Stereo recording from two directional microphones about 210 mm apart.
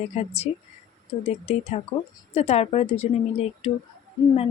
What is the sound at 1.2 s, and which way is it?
Speech, 30° left (ahead or behind).